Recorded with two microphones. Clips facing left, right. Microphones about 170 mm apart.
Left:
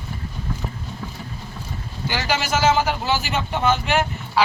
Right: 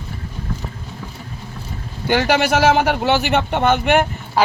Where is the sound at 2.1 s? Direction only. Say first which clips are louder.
Right 8 dB; 60° right (ahead or behind).